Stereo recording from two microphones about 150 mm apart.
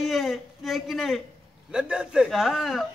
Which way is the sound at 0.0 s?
Centre (ahead or behind).